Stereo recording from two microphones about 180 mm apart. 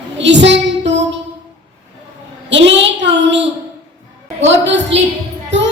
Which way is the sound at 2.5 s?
85° right.